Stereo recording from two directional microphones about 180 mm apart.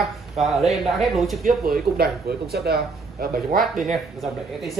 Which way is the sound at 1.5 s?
55° right (ahead or behind).